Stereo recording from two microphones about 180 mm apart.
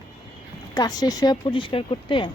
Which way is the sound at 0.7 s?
20° left (ahead or behind).